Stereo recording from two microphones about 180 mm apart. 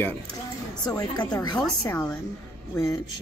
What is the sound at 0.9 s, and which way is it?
A woman's voice, 20° left (ahead or behind).